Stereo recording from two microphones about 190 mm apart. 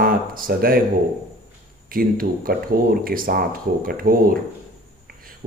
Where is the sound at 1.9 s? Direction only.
50° right (ahead or behind).